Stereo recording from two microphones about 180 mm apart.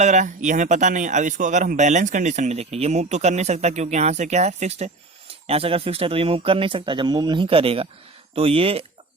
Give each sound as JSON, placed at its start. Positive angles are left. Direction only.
{"t": 0.0, "sound": "speech", "side_deg": -40}